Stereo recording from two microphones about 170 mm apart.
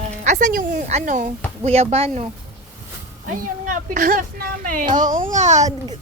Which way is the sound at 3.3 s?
50° right (ahead or behind).